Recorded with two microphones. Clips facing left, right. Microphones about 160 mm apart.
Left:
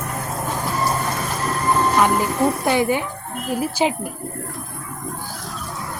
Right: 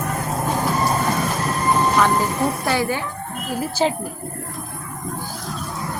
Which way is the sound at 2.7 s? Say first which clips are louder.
Left 3 dB; 20° left (ahead or behind).